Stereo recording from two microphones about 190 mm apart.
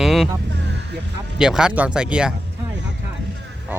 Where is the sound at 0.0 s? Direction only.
Centre (ahead or behind).